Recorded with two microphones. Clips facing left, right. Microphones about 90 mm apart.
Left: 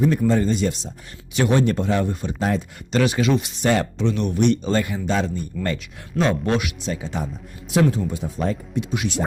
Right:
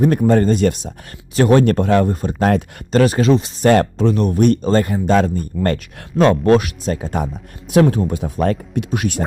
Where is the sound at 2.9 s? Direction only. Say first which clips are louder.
Right 6 dB; 40° right (ahead or behind).